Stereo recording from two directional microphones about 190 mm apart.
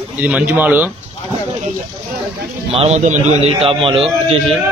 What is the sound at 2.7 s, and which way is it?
A man's voice, 35° right (ahead or behind).